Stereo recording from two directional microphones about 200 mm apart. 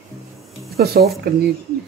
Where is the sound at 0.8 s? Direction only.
50° right (ahead or behind).